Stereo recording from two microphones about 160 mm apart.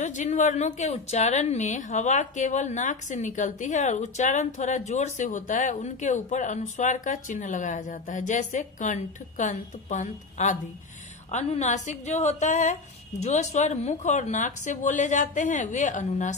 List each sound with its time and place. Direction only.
0.0 s a woman's voice: 45° left (ahead or behind)